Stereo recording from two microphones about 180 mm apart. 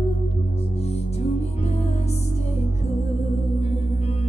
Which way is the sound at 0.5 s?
35° left (ahead or behind).